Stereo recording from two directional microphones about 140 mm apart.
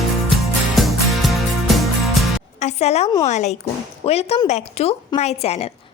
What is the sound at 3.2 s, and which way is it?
A woman's voice, 55° left (ahead or behind).